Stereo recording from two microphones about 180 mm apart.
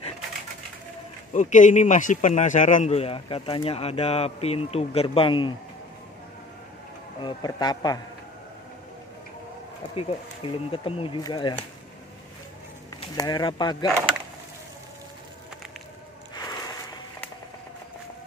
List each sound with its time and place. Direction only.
1.3 s speech: 45° left (ahead or behind); by 5.5 s 30° left (ahead or behind)
7.2 s speech: 25° left (ahead or behind)
9.9 s speech: 30° left (ahead or behind)
13.0 s speech: 25° left (ahead or behind)
16.3 s a sound: 20° left (ahead or behind)